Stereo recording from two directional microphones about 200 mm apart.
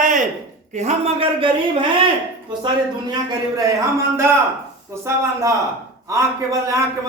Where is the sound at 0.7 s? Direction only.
35° right (ahead or behind).